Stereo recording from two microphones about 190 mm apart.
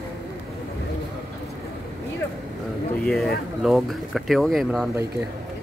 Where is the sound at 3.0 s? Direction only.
Centre (ahead or behind).